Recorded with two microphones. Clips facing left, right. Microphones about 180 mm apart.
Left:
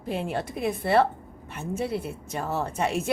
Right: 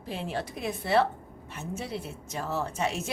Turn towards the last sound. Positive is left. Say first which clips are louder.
# left 4 dB
turn(degrees=55)  # may be behind; listen again after turning